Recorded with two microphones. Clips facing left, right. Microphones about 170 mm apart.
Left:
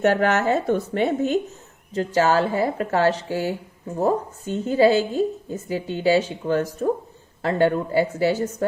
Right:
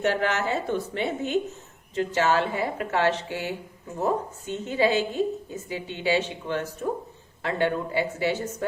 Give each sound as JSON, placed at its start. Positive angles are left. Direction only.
{"t": 0.0, "sound": "a woman's voice", "side_deg": 45}